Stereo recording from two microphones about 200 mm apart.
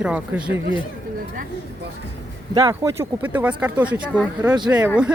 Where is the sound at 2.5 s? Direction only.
15° right (ahead or behind).